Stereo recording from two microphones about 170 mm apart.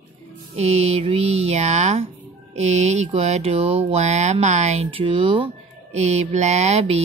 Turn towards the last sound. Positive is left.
turn(degrees=-40)  # may be behind; listen again after turning